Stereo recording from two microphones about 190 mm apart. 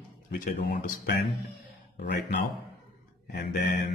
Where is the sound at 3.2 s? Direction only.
60° left (ahead or behind).